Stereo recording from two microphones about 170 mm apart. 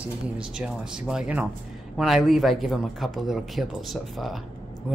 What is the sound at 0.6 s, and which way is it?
Speech, 5° right (ahead or behind).